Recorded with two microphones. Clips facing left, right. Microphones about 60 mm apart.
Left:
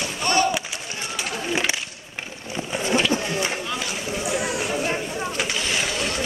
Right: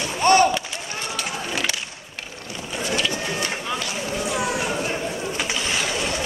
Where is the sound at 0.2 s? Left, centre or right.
Right.